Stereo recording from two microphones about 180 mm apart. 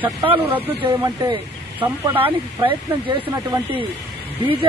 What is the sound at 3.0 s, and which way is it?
Speech, 30° right (ahead or behind).